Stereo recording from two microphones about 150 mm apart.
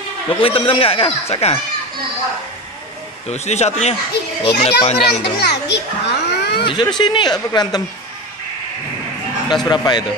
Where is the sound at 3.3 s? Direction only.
45° left (ahead or behind).